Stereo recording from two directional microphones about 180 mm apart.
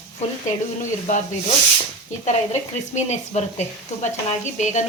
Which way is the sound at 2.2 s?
40° left (ahead or behind).